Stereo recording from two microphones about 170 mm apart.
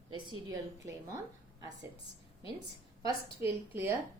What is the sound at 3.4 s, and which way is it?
Speech, 15° right (ahead or behind).